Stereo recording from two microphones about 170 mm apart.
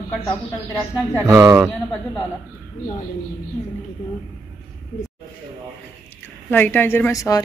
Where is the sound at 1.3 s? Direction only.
20° right (ahead or behind).